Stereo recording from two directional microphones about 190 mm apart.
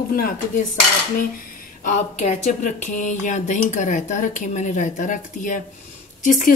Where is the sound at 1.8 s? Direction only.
40° left (ahead or behind).